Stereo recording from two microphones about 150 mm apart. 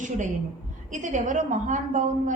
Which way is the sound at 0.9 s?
60° right (ahead or behind).